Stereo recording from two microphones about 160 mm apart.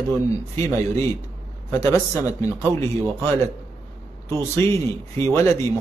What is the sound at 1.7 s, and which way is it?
A man's voice, 20° left (ahead or behind).